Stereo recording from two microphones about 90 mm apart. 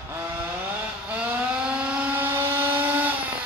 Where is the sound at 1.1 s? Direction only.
15° right (ahead or behind).